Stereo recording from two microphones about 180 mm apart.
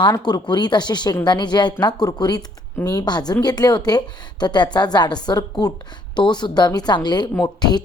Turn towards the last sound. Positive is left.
turn(degrees=25)  # may be behind; listen again after turning